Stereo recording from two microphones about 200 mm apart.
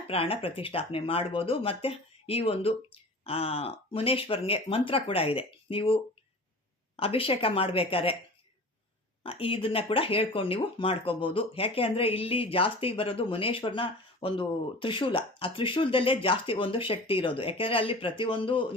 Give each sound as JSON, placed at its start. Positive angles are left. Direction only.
{"t": 0.1, "sound": "speech", "side_deg": 30}
{"t": 9.2, "sound": "speech", "side_deg": 30}